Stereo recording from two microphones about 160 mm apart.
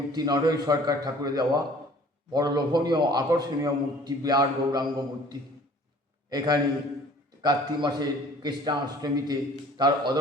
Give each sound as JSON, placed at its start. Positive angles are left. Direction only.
{"t": 0.1, "sound": "a man's voice", "side_deg": -25}
{"t": 6.3, "sound": "a man's voice", "side_deg": -25}